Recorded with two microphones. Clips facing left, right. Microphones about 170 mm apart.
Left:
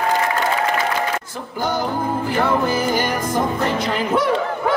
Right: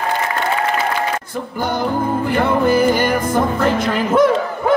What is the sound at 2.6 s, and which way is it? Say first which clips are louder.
Music: right 5 dB; 55° right (ahead or behind).